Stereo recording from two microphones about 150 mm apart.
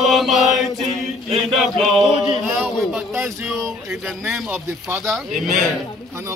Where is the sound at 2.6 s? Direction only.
Centre (ahead or behind).